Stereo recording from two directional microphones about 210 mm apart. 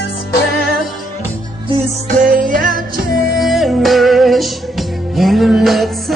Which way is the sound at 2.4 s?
40° right (ahead or behind).